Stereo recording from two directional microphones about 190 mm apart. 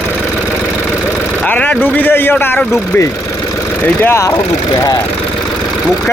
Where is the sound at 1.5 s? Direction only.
10° left (ahead or behind).